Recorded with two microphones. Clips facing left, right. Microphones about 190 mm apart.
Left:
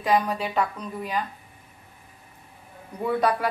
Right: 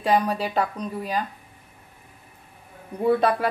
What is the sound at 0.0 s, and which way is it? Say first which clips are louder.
A woman's voice: right 1 dB; 30° right (ahead or behind).